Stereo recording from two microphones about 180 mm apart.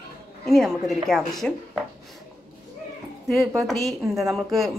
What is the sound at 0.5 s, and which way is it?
A woman's voice, centre (ahead or behind).